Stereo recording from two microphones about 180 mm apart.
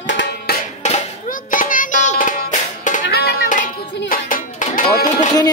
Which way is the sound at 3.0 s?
60° left (ahead or behind).